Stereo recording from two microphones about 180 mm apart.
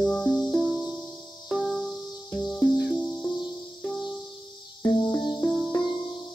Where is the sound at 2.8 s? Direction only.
5° left (ahead or behind).